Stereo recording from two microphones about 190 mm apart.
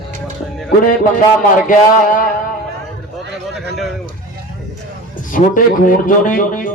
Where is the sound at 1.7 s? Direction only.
45° left (ahead or behind).